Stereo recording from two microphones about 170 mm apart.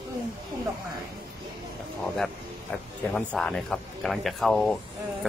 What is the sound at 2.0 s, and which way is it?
Speech, centre (ahead or behind).